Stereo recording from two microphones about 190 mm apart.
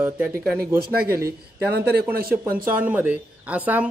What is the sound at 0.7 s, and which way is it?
A man's voice, 55° right (ahead or behind).